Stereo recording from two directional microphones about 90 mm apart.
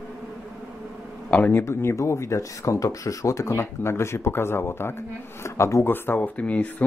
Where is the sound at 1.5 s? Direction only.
30° left (ahead or behind).